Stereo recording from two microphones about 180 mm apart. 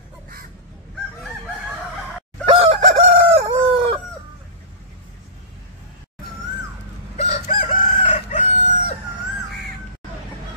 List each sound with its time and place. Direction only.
2.4 s chicken: 30° right (ahead or behind)
7.2 s chicken: 35° left (ahead or behind)